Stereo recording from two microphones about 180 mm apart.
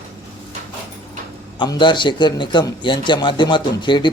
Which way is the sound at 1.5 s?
25° left (ahead or behind).